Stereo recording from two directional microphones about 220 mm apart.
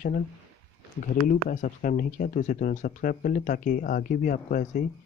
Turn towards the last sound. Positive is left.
turn(degrees=35)  # may be behind; listen again after turning